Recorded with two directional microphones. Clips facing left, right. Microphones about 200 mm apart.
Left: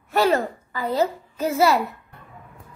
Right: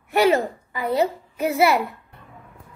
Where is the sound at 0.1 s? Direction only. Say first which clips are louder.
Right 2 dB; 15° right (ahead or behind).